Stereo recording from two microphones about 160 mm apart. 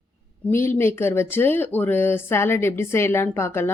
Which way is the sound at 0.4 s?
10° left (ahead or behind).